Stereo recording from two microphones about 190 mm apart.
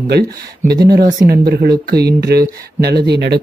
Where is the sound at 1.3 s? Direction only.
55° right (ahead or behind).